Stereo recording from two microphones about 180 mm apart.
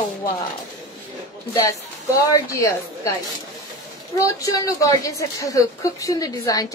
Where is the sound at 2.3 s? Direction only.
15° left (ahead or behind).